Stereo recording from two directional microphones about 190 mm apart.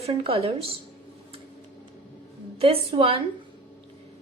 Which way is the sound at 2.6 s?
30° right (ahead or behind).